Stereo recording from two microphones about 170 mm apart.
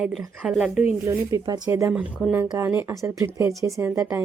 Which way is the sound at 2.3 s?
15° right (ahead or behind).